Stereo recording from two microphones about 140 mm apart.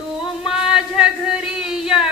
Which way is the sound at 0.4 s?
5° right (ahead or behind).